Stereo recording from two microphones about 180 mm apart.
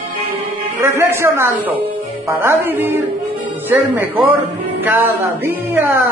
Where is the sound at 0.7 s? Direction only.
15° right (ahead or behind).